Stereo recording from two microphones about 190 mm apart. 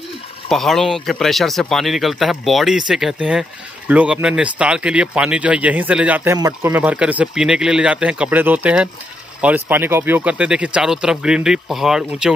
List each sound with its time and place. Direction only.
0.5 s speech: centre (ahead or behind)